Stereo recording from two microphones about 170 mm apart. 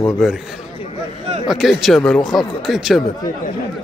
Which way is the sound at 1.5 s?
Centre (ahead or behind).